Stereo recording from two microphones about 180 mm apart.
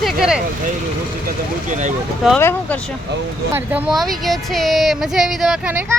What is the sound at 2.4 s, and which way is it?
Speech, 10° left (ahead or behind).